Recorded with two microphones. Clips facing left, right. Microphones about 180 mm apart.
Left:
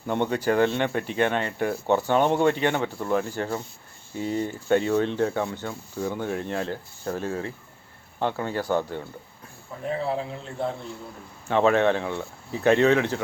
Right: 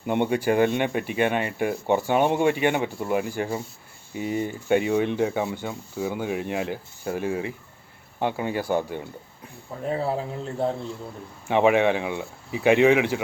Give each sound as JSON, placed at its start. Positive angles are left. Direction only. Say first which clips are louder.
{"t": 0.0, "sound": "speech", "louder": "right 2 dB", "side_deg": -10}
{"t": 11.4, "sound": "speech", "louder": "right 1 dB", "side_deg": -15}